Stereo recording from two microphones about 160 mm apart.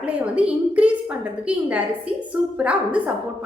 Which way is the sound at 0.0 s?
10° right (ahead or behind).